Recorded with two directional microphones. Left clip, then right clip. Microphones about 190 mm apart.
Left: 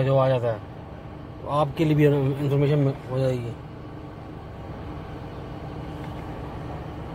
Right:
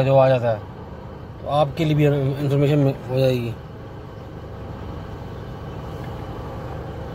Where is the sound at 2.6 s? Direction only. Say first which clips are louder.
Right 6 dB; 30° right (ahead or behind).